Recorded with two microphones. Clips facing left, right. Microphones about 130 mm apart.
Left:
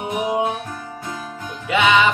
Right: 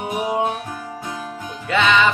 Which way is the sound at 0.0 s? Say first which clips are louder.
Left 1 dB; 15° left (ahead or behind).